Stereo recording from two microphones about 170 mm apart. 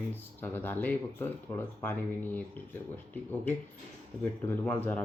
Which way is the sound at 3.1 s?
10° left (ahead or behind).